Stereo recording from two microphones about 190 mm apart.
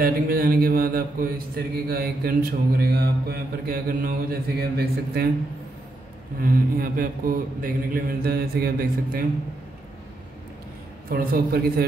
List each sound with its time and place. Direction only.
0.0 s a man's voice: 50° right (ahead or behind)
6.4 s a man's voice: 50° right (ahead or behind)
11.1 s a man's voice: 50° right (ahead or behind)